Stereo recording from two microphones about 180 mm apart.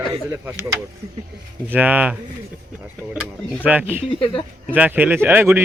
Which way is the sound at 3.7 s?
10° right (ahead or behind).